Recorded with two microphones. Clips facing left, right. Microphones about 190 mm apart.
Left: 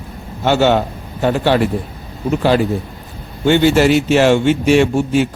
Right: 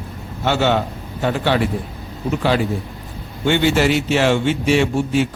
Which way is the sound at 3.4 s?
40° left (ahead or behind).